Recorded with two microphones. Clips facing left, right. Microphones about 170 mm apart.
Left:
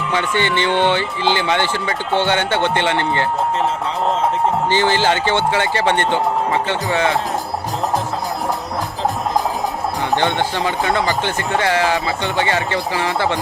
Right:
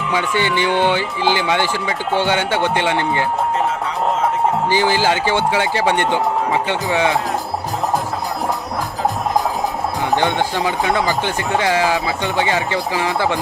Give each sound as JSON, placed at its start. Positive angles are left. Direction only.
{"t": 0.1, "sound": "speech", "side_deg": -10}
{"t": 4.7, "sound": "speech", "side_deg": -10}
{"t": 10.5, "sound": "speech", "side_deg": -15}